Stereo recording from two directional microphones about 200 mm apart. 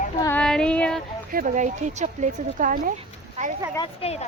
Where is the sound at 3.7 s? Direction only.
25° left (ahead or behind).